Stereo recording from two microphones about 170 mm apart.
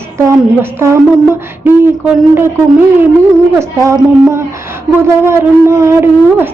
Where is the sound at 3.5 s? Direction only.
15° right (ahead or behind).